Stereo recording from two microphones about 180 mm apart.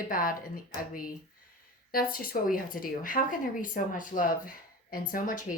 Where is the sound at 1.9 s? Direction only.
55° left (ahead or behind).